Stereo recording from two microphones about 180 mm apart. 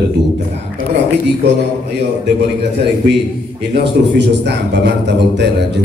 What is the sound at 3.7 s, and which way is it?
A man's voice, 70° right (ahead or behind).